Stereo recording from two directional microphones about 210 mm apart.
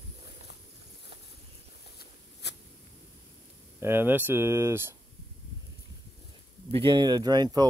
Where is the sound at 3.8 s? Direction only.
10° right (ahead or behind).